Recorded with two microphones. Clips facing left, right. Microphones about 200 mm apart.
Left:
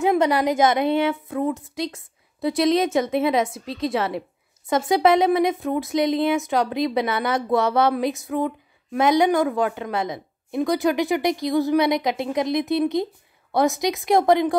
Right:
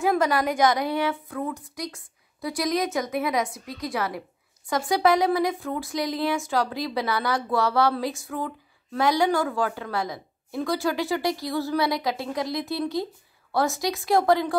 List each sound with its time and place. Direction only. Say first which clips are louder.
0.0 s speech: left 4 dB; 20° left (ahead or behind)